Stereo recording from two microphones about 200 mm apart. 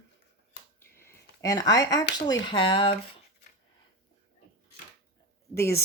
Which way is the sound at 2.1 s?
20° left (ahead or behind).